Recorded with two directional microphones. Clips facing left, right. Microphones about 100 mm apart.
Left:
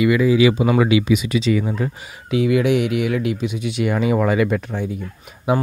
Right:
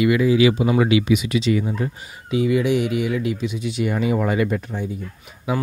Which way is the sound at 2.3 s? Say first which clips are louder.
Left 2 dB; 70° left (ahead or behind).